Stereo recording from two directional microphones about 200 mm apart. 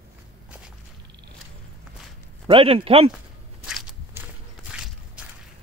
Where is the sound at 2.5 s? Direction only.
30° right (ahead or behind).